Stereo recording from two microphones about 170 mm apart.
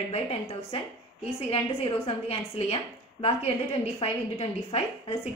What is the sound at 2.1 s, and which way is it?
Speech, 35° left (ahead or behind).